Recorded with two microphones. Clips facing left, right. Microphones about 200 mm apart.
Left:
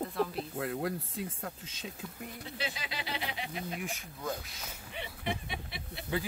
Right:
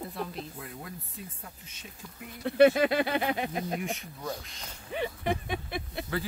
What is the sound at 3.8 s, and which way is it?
Speech, centre (ahead or behind).